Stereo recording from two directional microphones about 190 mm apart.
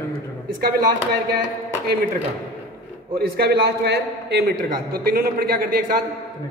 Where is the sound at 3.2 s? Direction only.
55° right (ahead or behind).